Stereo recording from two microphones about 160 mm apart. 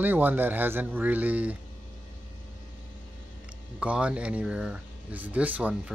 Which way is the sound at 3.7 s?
10° right (ahead or behind).